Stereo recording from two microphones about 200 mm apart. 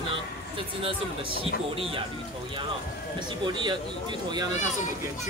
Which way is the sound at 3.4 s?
20° right (ahead or behind).